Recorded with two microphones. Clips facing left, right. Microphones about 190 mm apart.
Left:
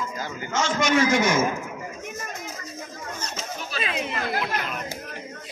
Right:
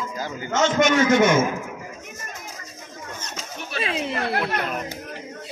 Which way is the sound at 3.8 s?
30° right (ahead or behind).